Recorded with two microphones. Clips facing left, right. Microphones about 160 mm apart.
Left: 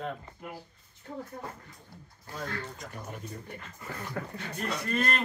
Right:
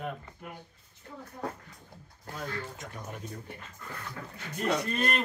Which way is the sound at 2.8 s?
Centre (ahead or behind).